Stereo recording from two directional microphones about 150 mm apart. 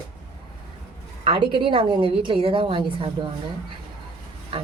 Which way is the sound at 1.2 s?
35° right (ahead or behind).